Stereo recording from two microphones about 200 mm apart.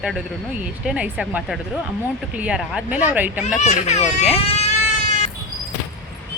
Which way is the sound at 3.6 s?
35° left (ahead or behind).